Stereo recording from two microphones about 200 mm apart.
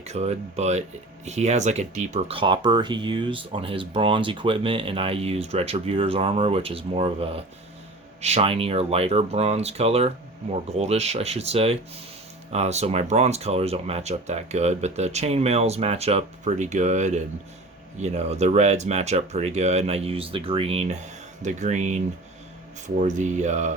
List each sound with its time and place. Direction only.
0.0 s speech: 35° right (ahead or behind)